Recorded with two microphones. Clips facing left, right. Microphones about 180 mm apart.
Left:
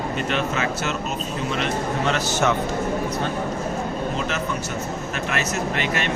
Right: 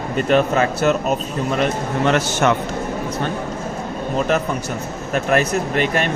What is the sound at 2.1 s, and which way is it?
Speech, 55° right (ahead or behind).